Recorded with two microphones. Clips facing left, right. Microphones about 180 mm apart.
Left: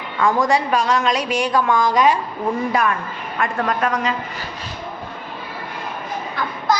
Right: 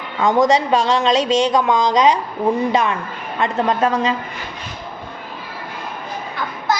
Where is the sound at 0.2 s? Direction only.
20° right (ahead or behind).